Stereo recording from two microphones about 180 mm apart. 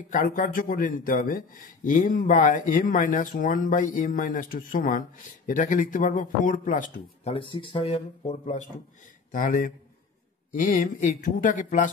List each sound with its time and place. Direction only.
0.1 s speech: 50° left (ahead or behind)
6.9 s speech: 30° left (ahead or behind)
9.3 s speech: 50° left (ahead or behind)